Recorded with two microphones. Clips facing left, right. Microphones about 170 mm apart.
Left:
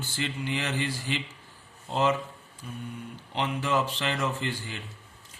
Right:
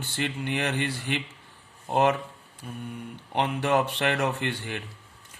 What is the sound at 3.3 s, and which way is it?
Mantra, 60° right (ahead or behind).